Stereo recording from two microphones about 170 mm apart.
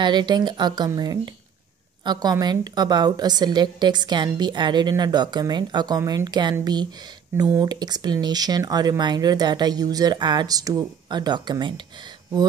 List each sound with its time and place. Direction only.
0.0 s a woman's voice: 25° right (ahead or behind)